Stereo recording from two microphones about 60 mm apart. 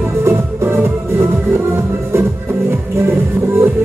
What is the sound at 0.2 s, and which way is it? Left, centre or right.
Music, right.